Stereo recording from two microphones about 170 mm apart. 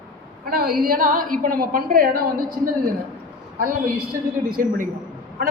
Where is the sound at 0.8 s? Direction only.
55° right (ahead or behind).